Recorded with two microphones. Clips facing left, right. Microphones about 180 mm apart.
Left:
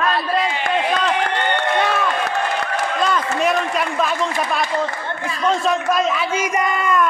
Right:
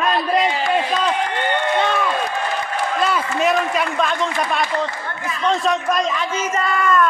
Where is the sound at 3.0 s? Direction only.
Centre (ahead or behind).